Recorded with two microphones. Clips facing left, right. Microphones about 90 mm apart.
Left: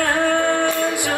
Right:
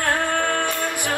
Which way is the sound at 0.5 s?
20° left (ahead or behind).